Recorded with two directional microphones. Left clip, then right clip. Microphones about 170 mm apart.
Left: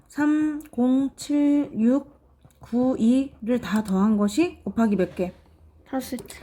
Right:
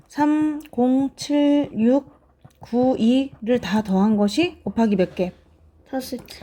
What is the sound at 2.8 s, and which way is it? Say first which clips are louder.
Speech: right 3 dB; 30° right (ahead or behind).